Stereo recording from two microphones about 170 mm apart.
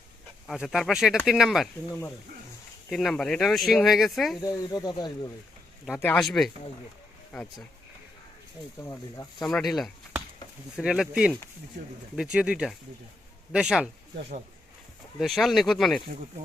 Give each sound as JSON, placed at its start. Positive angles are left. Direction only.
{"t": 0.4, "sound": "speech", "side_deg": 0}
{"t": 2.9, "sound": "speech", "side_deg": 0}
{"t": 4.4, "sound": "speech", "side_deg": 20}
{"t": 6.0, "sound": "speech", "side_deg": 10}
{"t": 8.8, "sound": "speech", "side_deg": 15}
{"t": 9.4, "sound": "speech", "side_deg": 0}
{"t": 15.2, "sound": "speech", "side_deg": 0}